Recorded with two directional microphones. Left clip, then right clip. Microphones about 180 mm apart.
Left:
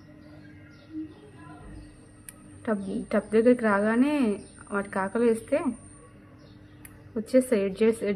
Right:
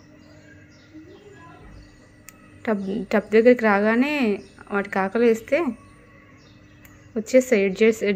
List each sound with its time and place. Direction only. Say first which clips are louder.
2.6 s a woman's voice: right 5 dB; 25° right (ahead or behind)
7.2 s a woman's voice: right 5 dB; 20° right (ahead or behind)